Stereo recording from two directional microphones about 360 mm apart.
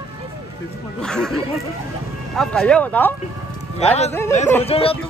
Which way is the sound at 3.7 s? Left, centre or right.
Centre.